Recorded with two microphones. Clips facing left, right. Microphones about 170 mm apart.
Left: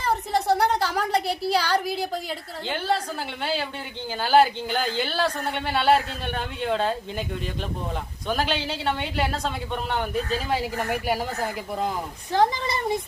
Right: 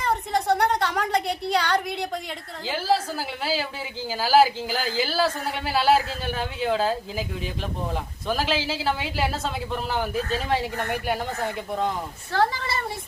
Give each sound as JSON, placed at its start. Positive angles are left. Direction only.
{"t": 0.0, "sound": "a sound", "side_deg": 0}
{"t": 2.6, "sound": "a woman's voice", "side_deg": -5}
{"t": 12.3, "sound": "speech", "side_deg": 15}